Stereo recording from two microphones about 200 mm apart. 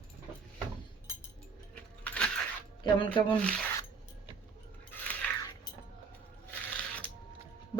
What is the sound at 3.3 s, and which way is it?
Speech, 5° left (ahead or behind).